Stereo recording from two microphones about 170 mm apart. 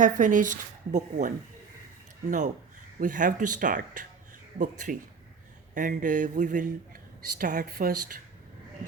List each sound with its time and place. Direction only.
0.0 s a woman's voice: 50° right (ahead or behind)